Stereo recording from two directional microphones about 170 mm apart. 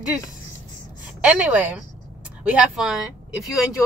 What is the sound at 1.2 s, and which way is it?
A woman's voice, 5° right (ahead or behind).